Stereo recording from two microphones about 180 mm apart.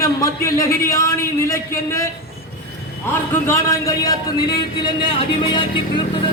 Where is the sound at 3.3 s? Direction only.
15° left (ahead or behind).